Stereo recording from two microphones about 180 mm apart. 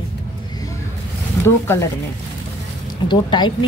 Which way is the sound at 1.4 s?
15° left (ahead or behind).